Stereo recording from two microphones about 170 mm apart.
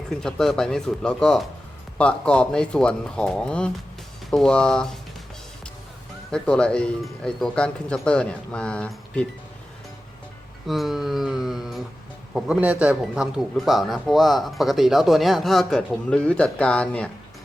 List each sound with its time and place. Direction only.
0.1 s a man's voice: 5° left (ahead or behind)
6.3 s a man's voice: 5° left (ahead or behind)
10.7 s a man's voice: centre (ahead or behind)